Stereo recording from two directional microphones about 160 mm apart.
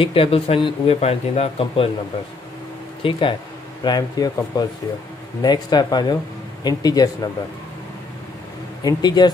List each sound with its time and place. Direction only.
0.0 s speech: 35° left (ahead or behind)
3.0 s speech: 35° left (ahead or behind)
8.8 s speech: 25° left (ahead or behind)